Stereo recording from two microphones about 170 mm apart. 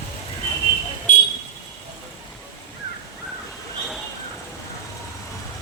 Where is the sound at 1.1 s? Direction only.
50° left (ahead or behind).